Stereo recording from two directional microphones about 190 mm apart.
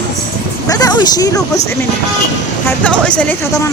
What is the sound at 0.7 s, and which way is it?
Speech, 20° left (ahead or behind).